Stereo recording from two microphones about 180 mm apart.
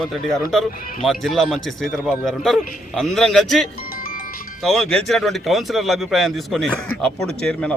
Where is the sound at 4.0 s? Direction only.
50° left (ahead or behind).